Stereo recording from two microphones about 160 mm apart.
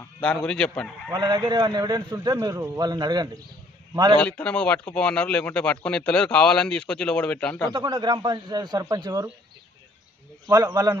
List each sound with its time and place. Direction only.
0.2 s a man's voice: 5° left (ahead or behind)
1.1 s a man's voice: 25° right (ahead or behind)
4.2 s speech: 5° left (ahead or behind)
7.7 s a man's voice: 30° right (ahead or behind)
10.4 s a man's voice: 20° right (ahead or behind)